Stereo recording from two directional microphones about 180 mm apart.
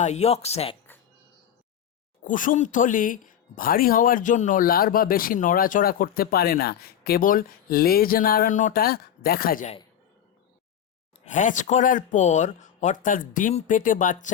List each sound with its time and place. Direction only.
0.0 s speech: 40° left (ahead or behind)
2.2 s speech: 45° left (ahead or behind)
11.3 s speech: 45° left (ahead or behind)